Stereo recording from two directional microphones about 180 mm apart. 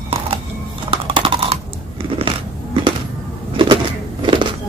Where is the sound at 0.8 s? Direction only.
30° right (ahead or behind).